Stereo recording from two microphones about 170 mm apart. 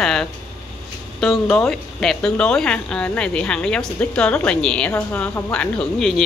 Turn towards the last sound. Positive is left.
turn(degrees=0)  # may be behind; listen again after turning